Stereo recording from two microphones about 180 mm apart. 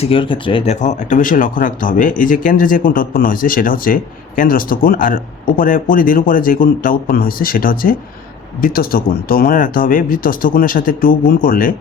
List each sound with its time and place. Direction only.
0.0 s speech: 30° left (ahead or behind); by 11.7 s 50° left (ahead or behind)